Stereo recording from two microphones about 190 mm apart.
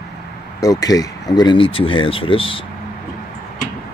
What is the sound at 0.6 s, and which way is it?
Speech, 20° left (ahead or behind).